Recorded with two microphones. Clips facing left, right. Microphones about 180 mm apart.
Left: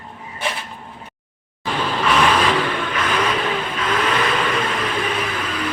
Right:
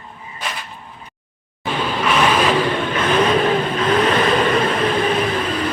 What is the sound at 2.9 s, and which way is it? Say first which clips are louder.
Vehicle: right 6 dB; 30° right (ahead or behind).